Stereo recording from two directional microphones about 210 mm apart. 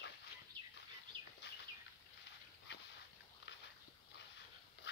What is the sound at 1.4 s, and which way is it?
Bird, 50° left (ahead or behind).